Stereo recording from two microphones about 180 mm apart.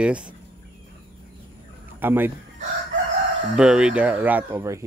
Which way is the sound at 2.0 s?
10° right (ahead or behind).